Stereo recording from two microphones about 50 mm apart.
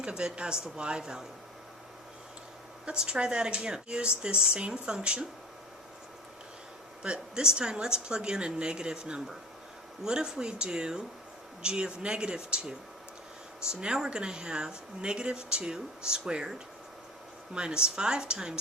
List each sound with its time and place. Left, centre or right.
0.0 s speech: centre
2.8 s speech: centre
7.0 s speech: centre